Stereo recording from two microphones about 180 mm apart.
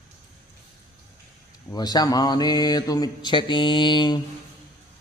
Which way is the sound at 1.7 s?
20° left (ahead or behind).